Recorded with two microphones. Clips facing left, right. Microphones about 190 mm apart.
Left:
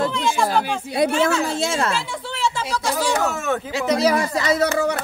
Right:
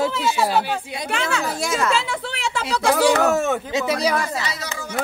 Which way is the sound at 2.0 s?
75° right (ahead or behind).